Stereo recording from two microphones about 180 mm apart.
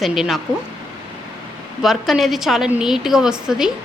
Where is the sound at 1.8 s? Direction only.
Centre (ahead or behind).